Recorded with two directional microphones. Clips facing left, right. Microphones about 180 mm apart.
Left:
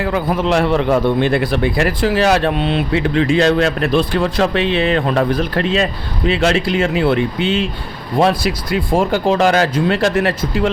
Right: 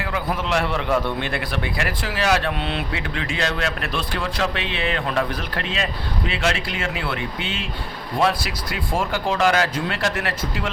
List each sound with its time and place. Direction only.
0.0 s a man's voice: 35° left (ahead or behind)